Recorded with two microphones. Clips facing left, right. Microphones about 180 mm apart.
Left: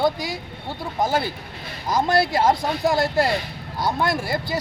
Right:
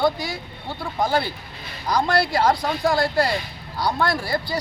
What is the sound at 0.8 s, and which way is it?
Speech, 20° left (ahead or behind).